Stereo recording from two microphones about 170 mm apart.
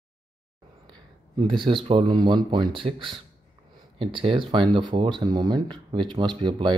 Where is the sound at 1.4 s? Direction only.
30° right (ahead or behind).